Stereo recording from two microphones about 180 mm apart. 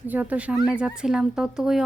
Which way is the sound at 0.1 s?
10° right (ahead or behind).